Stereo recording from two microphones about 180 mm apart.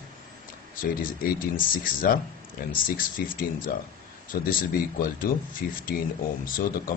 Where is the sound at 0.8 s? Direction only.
50° left (ahead or behind).